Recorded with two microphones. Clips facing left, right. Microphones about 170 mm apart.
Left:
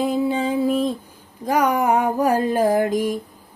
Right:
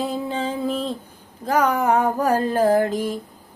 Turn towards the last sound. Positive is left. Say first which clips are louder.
# even
turn(degrees=10)  # may be behind; listen again after turning